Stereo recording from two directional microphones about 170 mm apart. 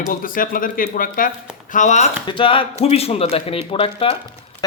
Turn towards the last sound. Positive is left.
turn(degrees=35)  # may be behind; listen again after turning